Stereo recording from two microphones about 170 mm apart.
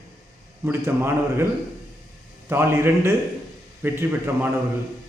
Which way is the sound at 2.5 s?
15° right (ahead or behind).